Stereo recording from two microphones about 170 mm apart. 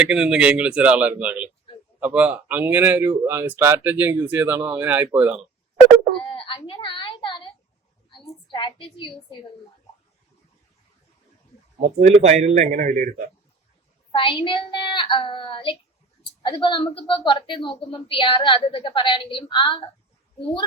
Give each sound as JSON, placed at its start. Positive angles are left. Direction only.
{"t": 0.0, "sound": "speech", "side_deg": -5}
{"t": 6.2, "sound": "a woman's voice", "side_deg": 30}
{"t": 11.8, "sound": "a man's voice", "side_deg": -40}
{"t": 14.1, "sound": "a child's voice", "side_deg": 30}